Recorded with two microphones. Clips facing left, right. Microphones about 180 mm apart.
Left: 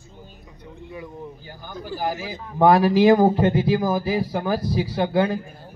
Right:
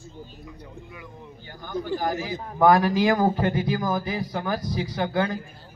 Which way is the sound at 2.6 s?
30° left (ahead or behind).